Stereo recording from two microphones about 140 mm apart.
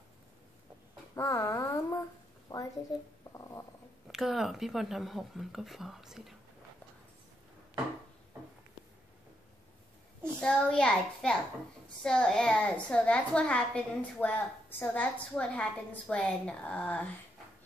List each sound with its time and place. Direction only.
1.1 s a woman's voice: 25° left (ahead or behind)
4.1 s speech: 5° right (ahead or behind)
10.4 s a woman's voice: 5° left (ahead or behind)